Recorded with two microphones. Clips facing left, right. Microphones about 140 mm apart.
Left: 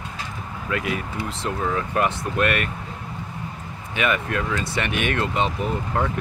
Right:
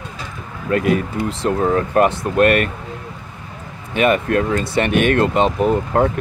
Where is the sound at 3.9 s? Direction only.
40° right (ahead or behind).